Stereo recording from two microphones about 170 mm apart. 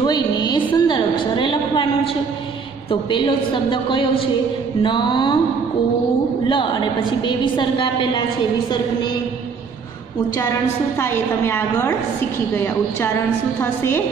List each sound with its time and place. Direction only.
0.0 s music: 25° left (ahead or behind)
2.9 s a woman's voice: 30° left (ahead or behind)
6.4 s a woman's voice: 30° left (ahead or behind)
11.0 s a woman's voice: 15° left (ahead or behind)